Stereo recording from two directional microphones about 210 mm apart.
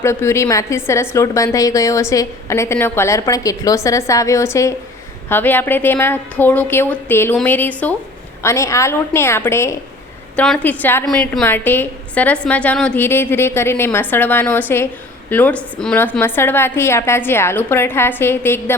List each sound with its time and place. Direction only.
0.0 s a woman's voice: 10° left (ahead or behind)